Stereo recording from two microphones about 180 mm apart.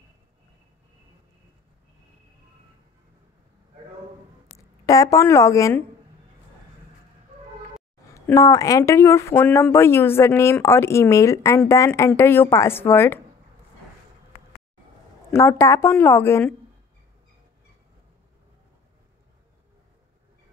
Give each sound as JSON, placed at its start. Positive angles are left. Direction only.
{"t": 4.8, "sound": "speech", "side_deg": 20}
{"t": 8.1, "sound": "speech", "side_deg": 15}
{"t": 15.3, "sound": "speech", "side_deg": 15}